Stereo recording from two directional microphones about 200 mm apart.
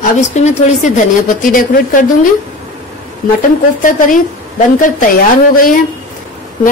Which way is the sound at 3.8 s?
40° left (ahead or behind).